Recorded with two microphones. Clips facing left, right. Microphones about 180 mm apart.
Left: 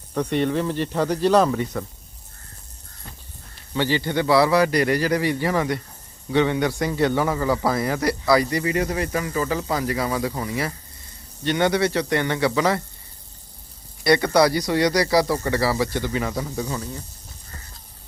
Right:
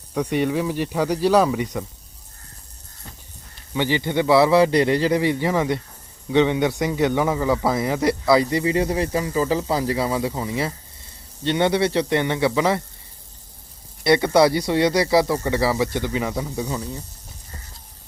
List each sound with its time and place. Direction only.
0.1 s speech: 10° right (ahead or behind)
3.8 s speech: 15° right (ahead or behind)
14.0 s speech: 25° right (ahead or behind)